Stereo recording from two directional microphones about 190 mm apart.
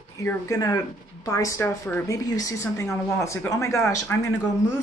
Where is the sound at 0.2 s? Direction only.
20° left (ahead or behind).